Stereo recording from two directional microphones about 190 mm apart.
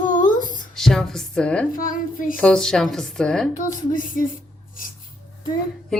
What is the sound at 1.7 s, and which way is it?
Female singing, 45° left (ahead or behind).